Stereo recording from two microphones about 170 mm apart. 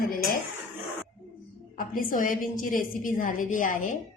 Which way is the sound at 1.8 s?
55° left (ahead or behind).